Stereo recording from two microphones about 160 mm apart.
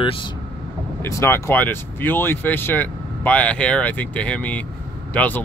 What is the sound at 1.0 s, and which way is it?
Speech, 15° left (ahead or behind).